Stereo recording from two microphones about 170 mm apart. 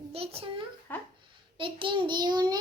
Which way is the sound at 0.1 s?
35° right (ahead or behind).